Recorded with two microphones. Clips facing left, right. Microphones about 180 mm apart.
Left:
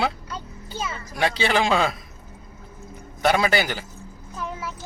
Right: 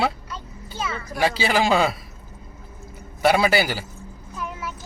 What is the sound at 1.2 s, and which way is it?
Speech, 5° right (ahead or behind).